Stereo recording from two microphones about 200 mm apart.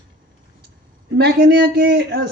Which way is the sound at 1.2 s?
55° right (ahead or behind).